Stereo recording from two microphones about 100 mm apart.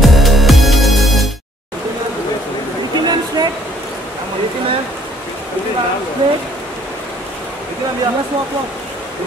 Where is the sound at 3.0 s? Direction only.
45° right (ahead or behind).